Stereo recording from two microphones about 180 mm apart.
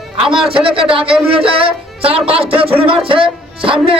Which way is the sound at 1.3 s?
30° right (ahead or behind).